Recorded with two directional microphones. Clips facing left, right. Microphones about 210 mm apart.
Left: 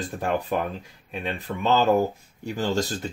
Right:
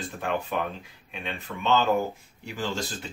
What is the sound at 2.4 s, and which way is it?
Speech, 40° left (ahead or behind).